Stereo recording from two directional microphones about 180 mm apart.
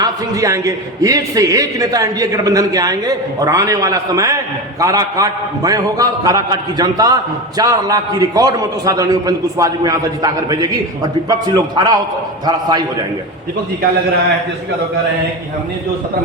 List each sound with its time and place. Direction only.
0.0 s a man's voice: 20° right (ahead or behind)